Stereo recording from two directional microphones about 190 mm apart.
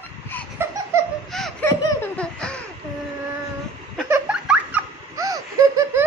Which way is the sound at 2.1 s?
5° left (ahead or behind).